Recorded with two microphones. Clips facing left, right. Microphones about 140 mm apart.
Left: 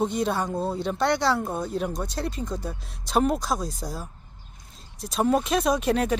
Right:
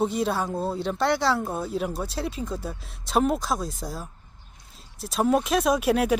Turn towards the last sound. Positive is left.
turn(degrees=-5)  # may be behind; listen again after turning